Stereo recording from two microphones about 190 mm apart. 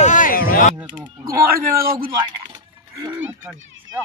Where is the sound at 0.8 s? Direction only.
10° right (ahead or behind).